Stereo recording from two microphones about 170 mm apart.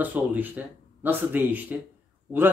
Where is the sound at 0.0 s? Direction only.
10° right (ahead or behind).